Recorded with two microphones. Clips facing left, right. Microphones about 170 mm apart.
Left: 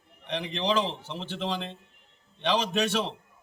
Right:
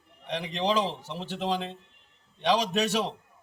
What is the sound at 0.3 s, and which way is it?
Speech, 5° right (ahead or behind).